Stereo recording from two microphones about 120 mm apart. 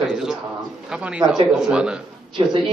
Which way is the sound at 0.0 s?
5° right (ahead or behind).